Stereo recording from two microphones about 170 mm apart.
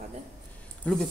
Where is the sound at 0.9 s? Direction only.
5° left (ahead or behind).